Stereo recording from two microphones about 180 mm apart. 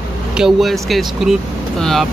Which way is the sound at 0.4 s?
Centre (ahead or behind).